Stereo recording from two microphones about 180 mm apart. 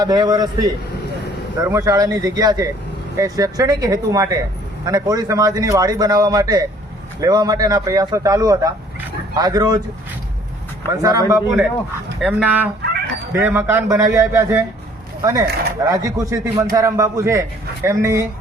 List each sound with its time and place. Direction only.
0.0 s a man's voice: 20° right (ahead or behind)
10.9 s speech: 20° right (ahead or behind)